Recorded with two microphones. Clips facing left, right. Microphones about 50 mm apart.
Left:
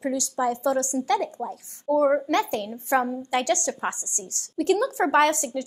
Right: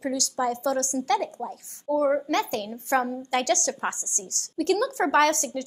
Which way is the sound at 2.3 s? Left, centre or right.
Left.